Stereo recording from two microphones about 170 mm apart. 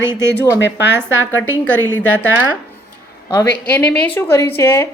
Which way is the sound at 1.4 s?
10° left (ahead or behind).